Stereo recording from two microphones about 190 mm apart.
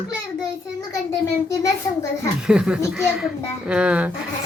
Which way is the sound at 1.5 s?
15° left (ahead or behind).